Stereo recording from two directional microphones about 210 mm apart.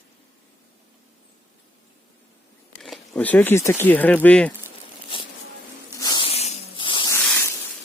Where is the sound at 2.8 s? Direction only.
5° left (ahead or behind).